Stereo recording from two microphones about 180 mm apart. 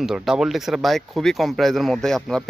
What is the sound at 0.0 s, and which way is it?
Speech, centre (ahead or behind).